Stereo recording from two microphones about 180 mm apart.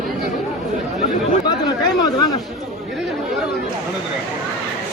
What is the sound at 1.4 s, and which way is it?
Chatter, 25° left (ahead or behind).